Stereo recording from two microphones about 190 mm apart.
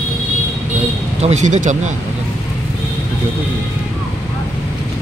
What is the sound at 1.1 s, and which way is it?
Speech, 35° right (ahead or behind).